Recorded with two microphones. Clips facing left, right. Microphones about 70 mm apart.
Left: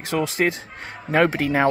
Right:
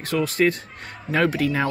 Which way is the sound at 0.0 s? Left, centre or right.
Centre.